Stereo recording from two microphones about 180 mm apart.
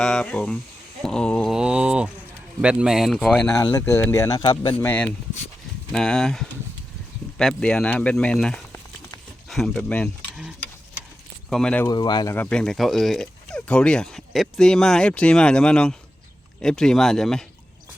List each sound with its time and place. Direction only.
0.0 s speech: 5° left (ahead or behind)
1.0 s a sound: 5° left (ahead or behind)
2.6 s speech: 5° right (ahead or behind)
3.4 s speech: 15° left (ahead or behind)
4.9 s speech: 10° left (ahead or behind)
9.5 s a sound: centre (ahead or behind)
11.4 s speech: 5° left (ahead or behind)
11.9 s speech: 25° left (ahead or behind)
12.4 s speech: 5° left (ahead or behind)